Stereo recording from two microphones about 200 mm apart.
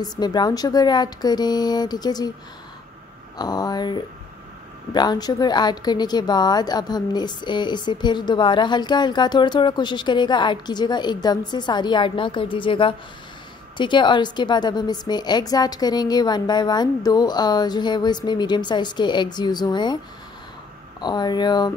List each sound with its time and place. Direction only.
0.0 s a woman's voice: 20° left (ahead or behind)
3.3 s a woman's voice: 20° left (ahead or behind)
21.0 s a woman's voice: 20° left (ahead or behind)